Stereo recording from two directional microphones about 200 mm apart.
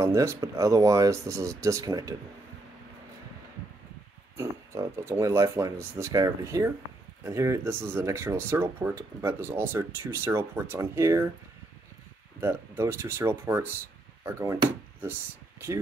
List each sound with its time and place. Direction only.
0.0 s speech: 15° right (ahead or behind)
4.4 s speech: 15° right (ahead or behind)
12.4 s speech: 10° right (ahead or behind)